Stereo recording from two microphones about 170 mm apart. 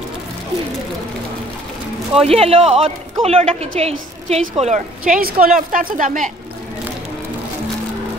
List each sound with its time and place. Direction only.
2.2 s a woman's voice: 35° right (ahead or behind)